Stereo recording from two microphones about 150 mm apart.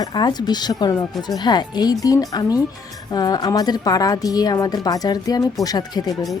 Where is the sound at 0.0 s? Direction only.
30° left (ahead or behind).